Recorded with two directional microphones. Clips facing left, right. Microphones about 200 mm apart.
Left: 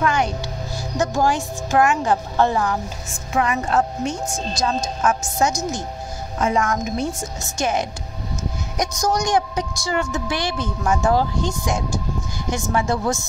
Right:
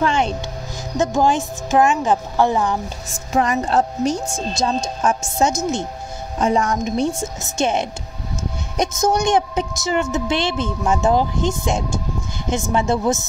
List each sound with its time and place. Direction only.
0.0 s music: 25° right (ahead or behind)
0.9 s speech: 20° right (ahead or behind)
3.3 s a woman's voice: 35° right (ahead or behind)